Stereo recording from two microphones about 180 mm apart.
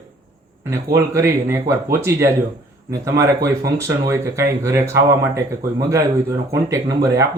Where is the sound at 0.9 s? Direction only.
15° right (ahead or behind).